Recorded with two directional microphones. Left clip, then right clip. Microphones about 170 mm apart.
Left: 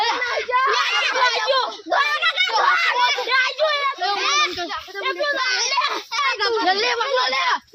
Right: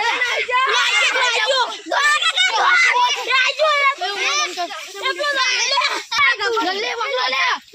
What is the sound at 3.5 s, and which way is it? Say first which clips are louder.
Children playing: right 4 dB; 25° right (ahead or behind).